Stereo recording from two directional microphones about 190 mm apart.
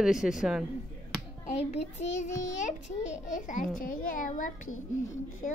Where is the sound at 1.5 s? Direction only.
35° left (ahead or behind).